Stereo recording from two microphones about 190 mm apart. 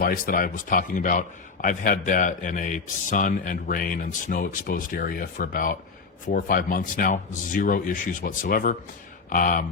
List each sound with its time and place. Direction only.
0.0 s speech: 50° left (ahead or behind)